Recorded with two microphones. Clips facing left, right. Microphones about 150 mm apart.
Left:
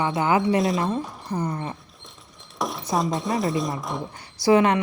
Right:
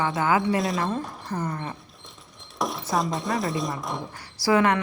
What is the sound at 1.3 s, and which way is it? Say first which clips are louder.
Speech: left 3 dB; 20° left (ahead or behind).